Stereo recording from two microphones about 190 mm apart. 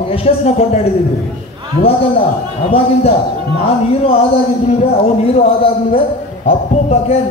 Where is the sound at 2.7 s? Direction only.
30° left (ahead or behind).